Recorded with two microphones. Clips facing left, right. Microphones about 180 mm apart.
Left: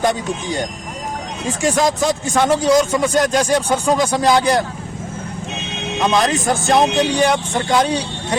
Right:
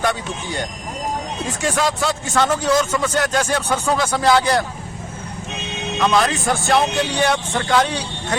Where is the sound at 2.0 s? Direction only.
15° left (ahead or behind).